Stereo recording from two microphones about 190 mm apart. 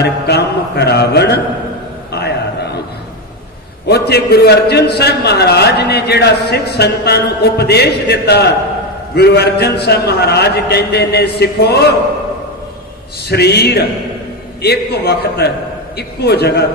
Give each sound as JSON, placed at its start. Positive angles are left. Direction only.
{"t": 0.0, "sound": "a man's voice", "side_deg": 60}
{"t": 2.1, "sound": "a sound", "side_deg": 60}
{"t": 3.8, "sound": "a man's voice", "side_deg": 60}
{"t": 13.3, "sound": "a man's voice", "side_deg": 60}